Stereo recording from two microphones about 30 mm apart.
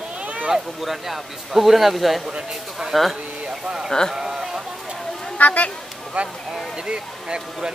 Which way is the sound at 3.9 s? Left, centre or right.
Centre.